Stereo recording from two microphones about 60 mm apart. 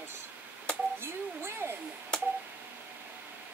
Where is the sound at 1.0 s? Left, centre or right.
Right.